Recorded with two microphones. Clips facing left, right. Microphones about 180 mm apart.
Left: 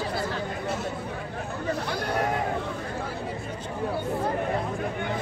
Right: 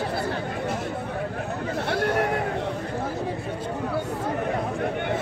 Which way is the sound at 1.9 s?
65° right (ahead or behind).